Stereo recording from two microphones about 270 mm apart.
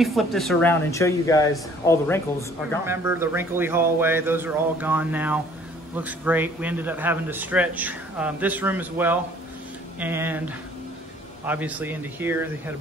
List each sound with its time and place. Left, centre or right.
0.0 s speech: centre
2.8 s a man's voice: centre
11.4 s a man's voice: centre